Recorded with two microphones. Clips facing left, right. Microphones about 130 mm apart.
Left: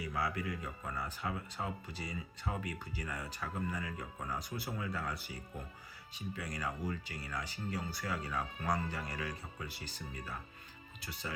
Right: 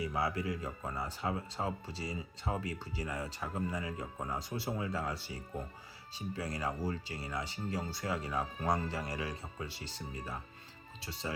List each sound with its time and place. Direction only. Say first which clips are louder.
0.0 s speech: right 3 dB; 25° right (ahead or behind)